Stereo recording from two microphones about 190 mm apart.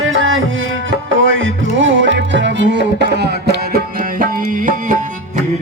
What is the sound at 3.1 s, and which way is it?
Tabla, 60° right (ahead or behind).